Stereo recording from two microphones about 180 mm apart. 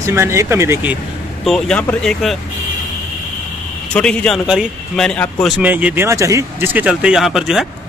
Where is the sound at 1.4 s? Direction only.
5° left (ahead or behind).